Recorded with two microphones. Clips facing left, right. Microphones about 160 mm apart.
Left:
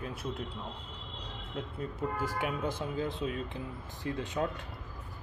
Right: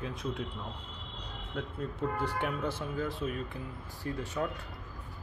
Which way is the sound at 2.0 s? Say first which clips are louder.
Right 1 dB; 5° left (ahead or behind).